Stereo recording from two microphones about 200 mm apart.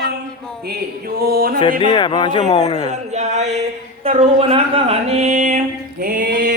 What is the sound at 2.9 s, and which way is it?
Speech, 35° right (ahead or behind).